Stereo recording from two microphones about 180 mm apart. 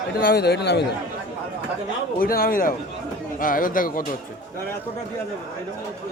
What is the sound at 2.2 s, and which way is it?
Speech, 55° left (ahead or behind).